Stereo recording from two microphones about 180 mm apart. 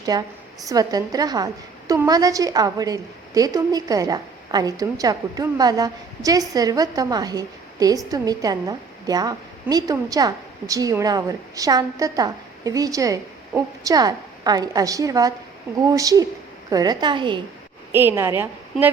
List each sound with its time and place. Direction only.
0.0 s a woman's voice: 20° right (ahead or behind)
17.9 s a woman's voice: 15° right (ahead or behind)